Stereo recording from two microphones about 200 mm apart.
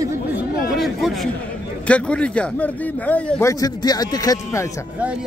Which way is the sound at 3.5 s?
20° left (ahead or behind).